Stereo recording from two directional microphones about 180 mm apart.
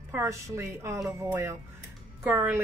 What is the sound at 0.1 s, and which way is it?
Speech, 15° right (ahead or behind).